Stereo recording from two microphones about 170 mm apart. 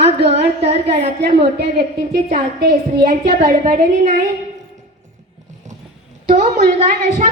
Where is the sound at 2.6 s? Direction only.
70° right (ahead or behind).